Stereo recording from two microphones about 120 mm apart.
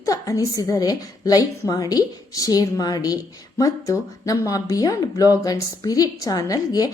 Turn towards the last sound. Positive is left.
turn(degrees=30)  # may be behind; listen again after turning